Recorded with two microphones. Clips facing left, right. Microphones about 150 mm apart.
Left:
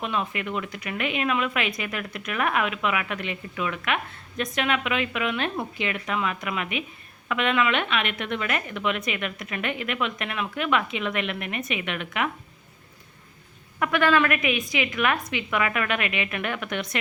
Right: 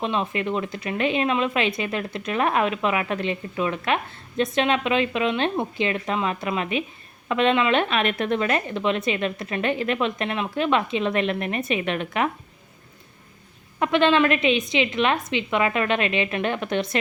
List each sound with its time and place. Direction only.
0.0 s speech: 30° right (ahead or behind)
13.7 s speech: 25° right (ahead or behind)